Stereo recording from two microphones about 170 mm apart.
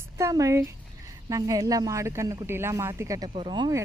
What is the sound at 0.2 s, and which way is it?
Speech, 20° right (ahead or behind).